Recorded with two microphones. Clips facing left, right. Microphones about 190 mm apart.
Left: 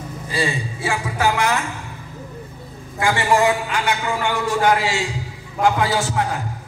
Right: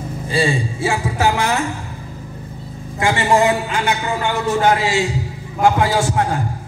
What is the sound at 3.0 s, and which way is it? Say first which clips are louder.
A woman's voice: right 2 dB; 25° right (ahead or behind).